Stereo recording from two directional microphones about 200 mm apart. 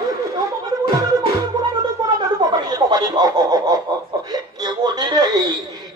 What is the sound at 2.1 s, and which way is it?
Snicker, 20° right (ahead or behind).